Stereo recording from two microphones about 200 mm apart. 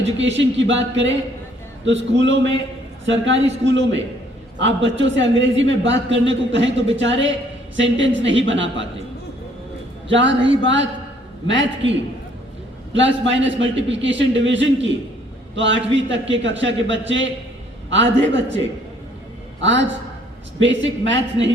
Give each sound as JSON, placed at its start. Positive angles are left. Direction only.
{"t": 0.2, "sound": "a man's voice", "side_deg": -65}
{"t": 10.1, "sound": "a man's voice", "side_deg": -65}
{"t": 13.4, "sound": "a man's voice", "side_deg": -65}